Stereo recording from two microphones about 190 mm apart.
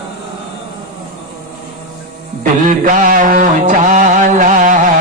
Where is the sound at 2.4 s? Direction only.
45° right (ahead or behind).